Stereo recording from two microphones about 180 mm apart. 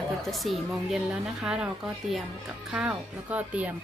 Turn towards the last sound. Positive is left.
turn(degrees=-10)  # may be behind; listen again after turning